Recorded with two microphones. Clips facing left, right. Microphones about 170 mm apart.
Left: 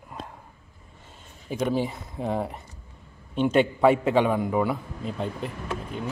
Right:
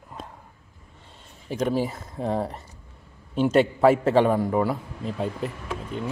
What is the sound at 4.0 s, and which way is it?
Speech, 35° right (ahead or behind).